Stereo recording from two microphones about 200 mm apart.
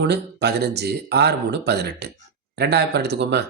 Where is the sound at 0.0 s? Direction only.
55° right (ahead or behind).